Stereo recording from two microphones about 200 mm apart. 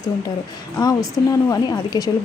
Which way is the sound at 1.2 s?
20° left (ahead or behind).